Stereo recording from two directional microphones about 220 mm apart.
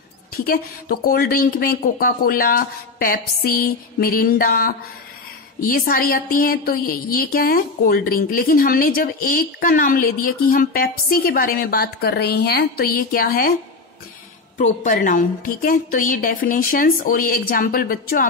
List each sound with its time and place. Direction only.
0.5 s a woman's voice: 40° left (ahead or behind)
14.6 s a woman's voice: 35° left (ahead or behind)